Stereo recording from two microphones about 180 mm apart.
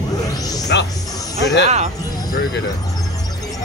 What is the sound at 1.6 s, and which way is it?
Speech, 40° right (ahead or behind).